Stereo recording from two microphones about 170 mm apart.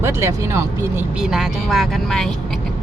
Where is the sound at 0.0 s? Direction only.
15° right (ahead or behind).